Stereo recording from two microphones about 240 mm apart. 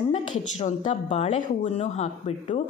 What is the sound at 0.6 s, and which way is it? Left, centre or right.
A woman's voice, left.